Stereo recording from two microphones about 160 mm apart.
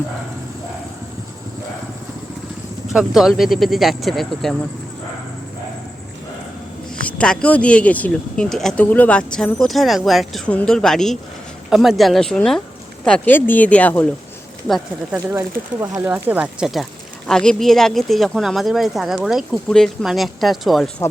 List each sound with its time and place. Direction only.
2.9 s speech: centre (ahead or behind)
7.0 s speech: 5° left (ahead or behind)
15.1 s speech: 15° right (ahead or behind); by 20.9 s centre (ahead or behind)